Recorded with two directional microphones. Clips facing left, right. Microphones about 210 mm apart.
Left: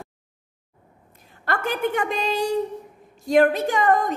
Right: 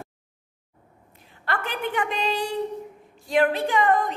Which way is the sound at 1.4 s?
45° left (ahead or behind).